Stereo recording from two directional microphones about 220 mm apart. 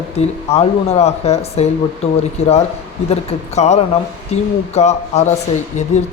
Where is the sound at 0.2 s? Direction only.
30° left (ahead or behind).